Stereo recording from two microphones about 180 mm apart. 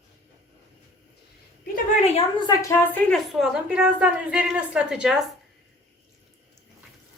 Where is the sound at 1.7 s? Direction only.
40° left (ahead or behind).